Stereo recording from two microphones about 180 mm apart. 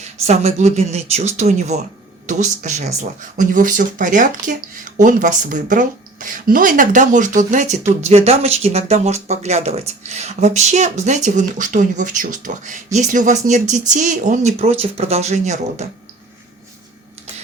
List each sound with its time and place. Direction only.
0.3 s a woman's voice: 35° right (ahead or behind)